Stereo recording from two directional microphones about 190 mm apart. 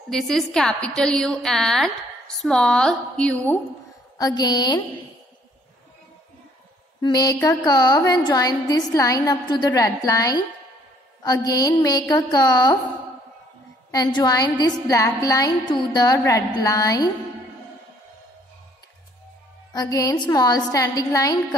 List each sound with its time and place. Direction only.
0.1 s a woman's voice: centre (ahead or behind)
4.2 s a woman's voice: 20° left (ahead or behind)
7.0 s a woman's voice: 20° left (ahead or behind)
11.4 s a woman's voice: 20° left (ahead or behind)
13.9 s a woman's voice: 20° left (ahead or behind)
19.7 s a woman's voice: 20° left (ahead or behind)